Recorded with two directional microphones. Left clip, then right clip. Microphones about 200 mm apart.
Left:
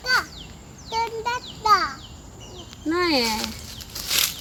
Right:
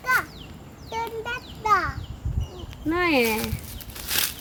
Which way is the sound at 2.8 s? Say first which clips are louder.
Even; 35° right (ahead or behind).